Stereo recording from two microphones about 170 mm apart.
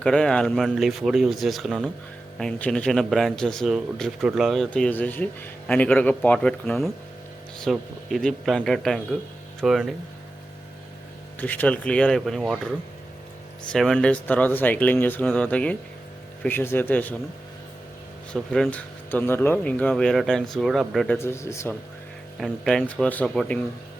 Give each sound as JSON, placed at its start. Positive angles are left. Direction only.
{"t": 0.0, "sound": "speech", "side_deg": 5}
{"t": 11.3, "sound": "speech", "side_deg": 10}
{"t": 13.7, "sound": "speech", "side_deg": 5}
{"t": 18.3, "sound": "speech", "side_deg": 5}
{"t": 21.2, "sound": "speech", "side_deg": 15}
{"t": 22.4, "sound": "speech", "side_deg": 0}